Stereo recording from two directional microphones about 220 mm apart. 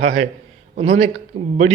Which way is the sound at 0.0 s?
25° right (ahead or behind).